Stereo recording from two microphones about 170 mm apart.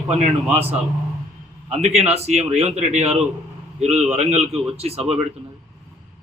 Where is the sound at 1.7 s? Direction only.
40° right (ahead or behind).